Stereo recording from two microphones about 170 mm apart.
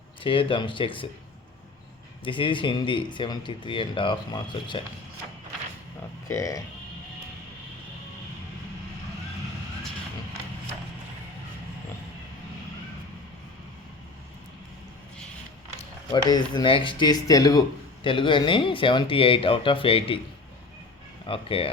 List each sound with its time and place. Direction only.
0.2 s speech: 30° left (ahead or behind)
2.2 s speech: 30° left (ahead or behind)
6.2 s speech: 20° left (ahead or behind)
16.1 s speech: 25° left (ahead or behind)
21.2 s speech: 30° left (ahead or behind)